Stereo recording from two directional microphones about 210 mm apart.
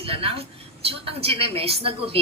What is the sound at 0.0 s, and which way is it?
A woman's voice, 25° right (ahead or behind).